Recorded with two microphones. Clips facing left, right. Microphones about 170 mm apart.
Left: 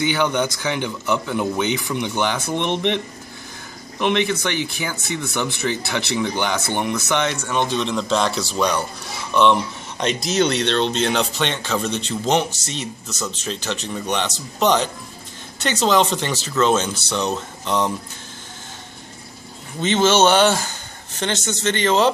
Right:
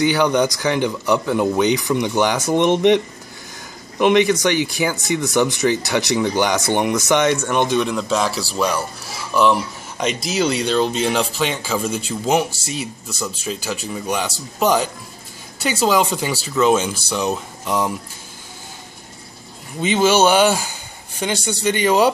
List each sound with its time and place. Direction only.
0.2 s speech: 15° right (ahead or behind)
4.0 s speech: 10° right (ahead or behind)
19.8 s speech: 10° right (ahead or behind)